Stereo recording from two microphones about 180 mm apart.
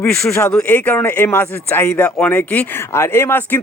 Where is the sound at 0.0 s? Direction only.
10° left (ahead or behind).